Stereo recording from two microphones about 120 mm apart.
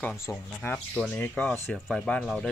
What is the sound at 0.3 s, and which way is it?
Speech, 20° left (ahead or behind).